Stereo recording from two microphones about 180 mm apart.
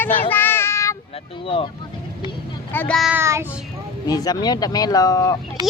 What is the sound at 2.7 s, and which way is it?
Speech, 10° left (ahead or behind).